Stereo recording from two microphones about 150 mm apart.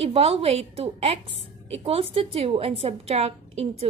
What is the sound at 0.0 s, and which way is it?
A woman's voice, 40° right (ahead or behind).